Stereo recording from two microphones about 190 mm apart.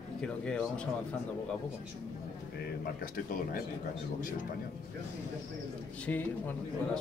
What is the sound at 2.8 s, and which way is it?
Speech, 50° left (ahead or behind).